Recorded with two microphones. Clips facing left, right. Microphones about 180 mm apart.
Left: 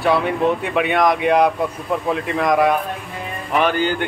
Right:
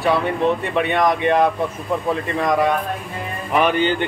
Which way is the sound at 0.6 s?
5° left (ahead or behind).